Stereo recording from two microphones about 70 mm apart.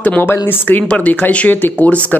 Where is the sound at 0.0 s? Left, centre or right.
Left.